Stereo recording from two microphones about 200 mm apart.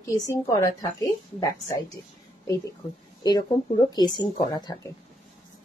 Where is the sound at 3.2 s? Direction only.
20° left (ahead or behind).